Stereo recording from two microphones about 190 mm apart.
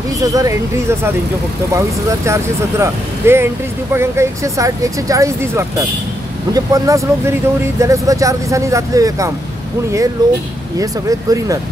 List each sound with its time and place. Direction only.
0.2 s speech: 20° right (ahead or behind)